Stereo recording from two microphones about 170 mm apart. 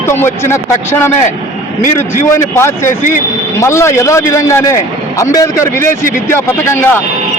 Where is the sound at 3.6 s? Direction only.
15° left (ahead or behind).